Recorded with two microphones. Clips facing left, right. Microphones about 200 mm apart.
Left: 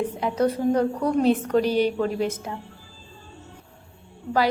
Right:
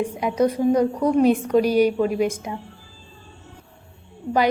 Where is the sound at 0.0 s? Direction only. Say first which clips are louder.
Right 2 dB; 15° right (ahead or behind).